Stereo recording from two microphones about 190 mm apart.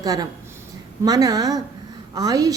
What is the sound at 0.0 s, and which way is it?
A woman's voice, 20° right (ahead or behind).